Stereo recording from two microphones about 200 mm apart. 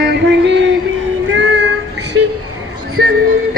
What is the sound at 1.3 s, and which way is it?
Child singing, 70° right (ahead or behind).